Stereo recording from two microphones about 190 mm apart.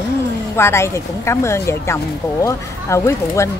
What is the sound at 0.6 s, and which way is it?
Speech, 15° left (ahead or behind).